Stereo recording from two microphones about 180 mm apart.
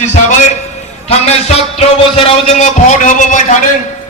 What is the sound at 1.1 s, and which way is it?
A man's voice, 35° left (ahead or behind).